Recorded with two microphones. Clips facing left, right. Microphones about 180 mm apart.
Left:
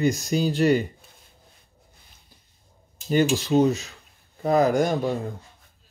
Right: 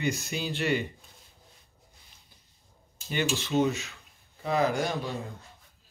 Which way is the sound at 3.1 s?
40° left (ahead or behind).